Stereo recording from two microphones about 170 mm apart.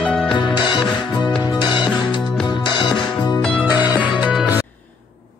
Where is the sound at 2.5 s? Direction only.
25° left (ahead or behind).